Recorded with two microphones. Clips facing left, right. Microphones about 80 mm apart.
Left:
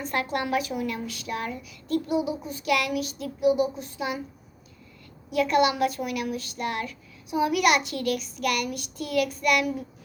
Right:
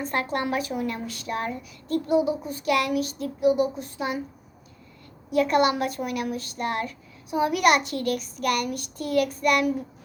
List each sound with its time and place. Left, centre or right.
0.0 s speech: right
5.3 s speech: right